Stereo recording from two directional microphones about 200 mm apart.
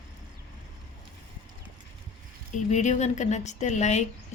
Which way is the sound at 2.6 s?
35° left (ahead or behind).